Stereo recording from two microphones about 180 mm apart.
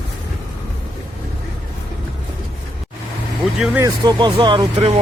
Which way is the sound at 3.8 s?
20° right (ahead or behind).